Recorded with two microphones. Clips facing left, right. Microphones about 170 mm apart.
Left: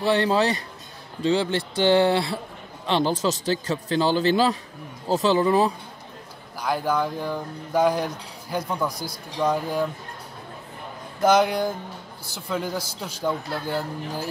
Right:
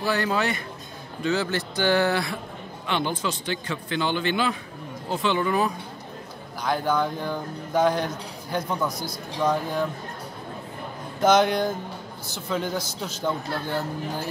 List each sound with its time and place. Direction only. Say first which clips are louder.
0.0 s a man's voice: left 4 dB; 30° left (ahead or behind)
6.6 s speech: even; 5° left (ahead or behind)
11.2 s speech: even; 10° left (ahead or behind)